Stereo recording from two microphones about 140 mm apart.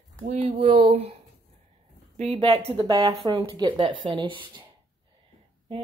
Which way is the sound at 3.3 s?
35° right (ahead or behind).